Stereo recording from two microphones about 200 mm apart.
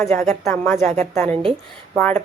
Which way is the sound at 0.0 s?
10° left (ahead or behind).